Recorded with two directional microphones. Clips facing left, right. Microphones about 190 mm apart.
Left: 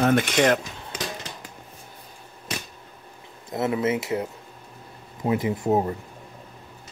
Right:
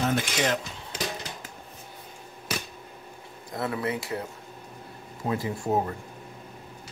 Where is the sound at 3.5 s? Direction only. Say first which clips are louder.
Left 6 dB; 20° left (ahead or behind).